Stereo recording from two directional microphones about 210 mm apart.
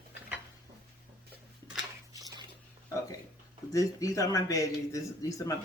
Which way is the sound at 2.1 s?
15° right (ahead or behind).